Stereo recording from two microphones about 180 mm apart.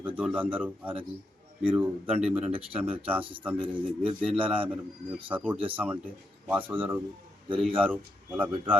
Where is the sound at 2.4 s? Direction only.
30° right (ahead or behind).